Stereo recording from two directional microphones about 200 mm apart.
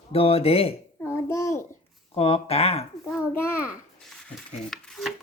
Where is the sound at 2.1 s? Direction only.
30° left (ahead or behind).